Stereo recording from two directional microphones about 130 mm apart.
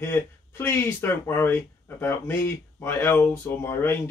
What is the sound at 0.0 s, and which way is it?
Speech, 20° left (ahead or behind).